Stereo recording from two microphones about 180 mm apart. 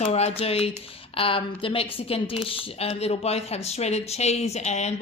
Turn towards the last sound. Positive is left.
turn(degrees=40)  # may be behind; listen again after turning